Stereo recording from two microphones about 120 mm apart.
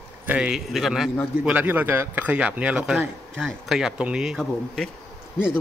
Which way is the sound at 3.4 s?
Centre (ahead or behind).